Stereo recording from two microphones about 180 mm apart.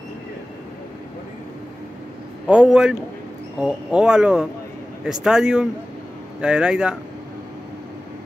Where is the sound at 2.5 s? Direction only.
5° right (ahead or behind).